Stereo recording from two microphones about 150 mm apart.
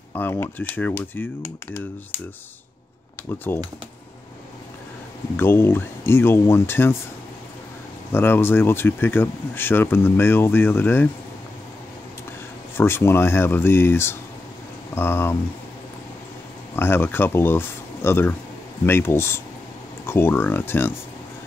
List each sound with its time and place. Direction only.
0.1 s speech: 15° left (ahead or behind)
3.5 s speech: 15° left (ahead or behind)
5.4 s speech: 15° left (ahead or behind)
8.1 s speech: 15° left (ahead or behind)
12.7 s speech: 15° left (ahead or behind)
16.7 s speech: 15° left (ahead or behind)